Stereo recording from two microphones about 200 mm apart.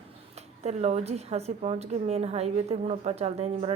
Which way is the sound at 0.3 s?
35° right (ahead or behind).